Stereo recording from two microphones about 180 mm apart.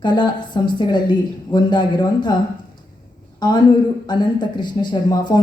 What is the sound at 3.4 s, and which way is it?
Speech, 25° left (ahead or behind).